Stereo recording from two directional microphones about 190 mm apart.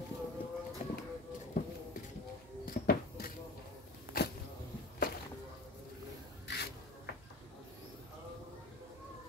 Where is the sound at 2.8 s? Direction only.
55° left (ahead or behind).